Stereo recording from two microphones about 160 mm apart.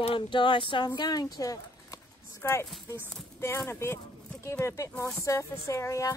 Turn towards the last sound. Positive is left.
turn(degrees=20)  # may be behind; listen again after turning